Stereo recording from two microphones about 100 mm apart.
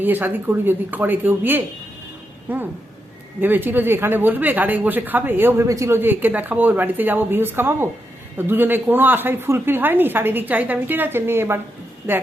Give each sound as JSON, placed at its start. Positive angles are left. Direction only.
{"t": 0.0, "sound": "a woman's voice", "side_deg": -20}
{"t": 5.6, "sound": "a woman's voice", "side_deg": -30}